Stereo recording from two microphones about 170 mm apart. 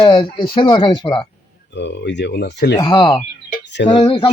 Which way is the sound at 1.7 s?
90° left.